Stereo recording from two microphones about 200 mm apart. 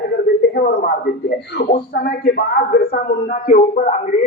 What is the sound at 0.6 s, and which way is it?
A man's voice, 50° left (ahead or behind).